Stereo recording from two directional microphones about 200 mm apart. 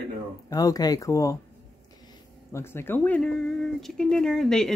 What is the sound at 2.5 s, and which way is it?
A man's voice, 10° left (ahead or behind).